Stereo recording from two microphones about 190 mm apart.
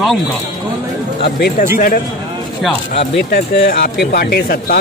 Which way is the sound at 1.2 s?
55° left (ahead or behind).